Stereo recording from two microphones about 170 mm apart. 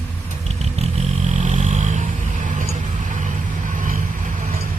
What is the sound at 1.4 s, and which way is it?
Vehicle, 40° right (ahead or behind).